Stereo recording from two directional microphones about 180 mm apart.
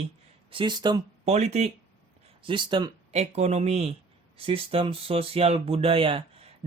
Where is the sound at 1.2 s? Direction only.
35° right (ahead or behind).